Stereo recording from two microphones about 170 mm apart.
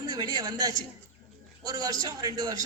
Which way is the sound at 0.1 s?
25° right (ahead or behind).